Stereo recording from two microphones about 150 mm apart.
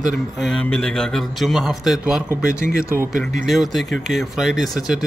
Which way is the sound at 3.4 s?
Centre (ahead or behind).